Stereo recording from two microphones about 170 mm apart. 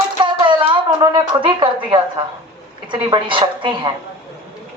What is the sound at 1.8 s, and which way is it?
A woman's voice, 25° right (ahead or behind).